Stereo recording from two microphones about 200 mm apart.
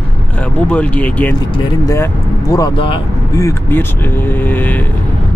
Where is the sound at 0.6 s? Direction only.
5° left (ahead or behind).